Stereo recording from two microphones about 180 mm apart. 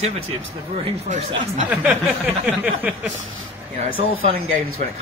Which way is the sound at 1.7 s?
10° right (ahead or behind).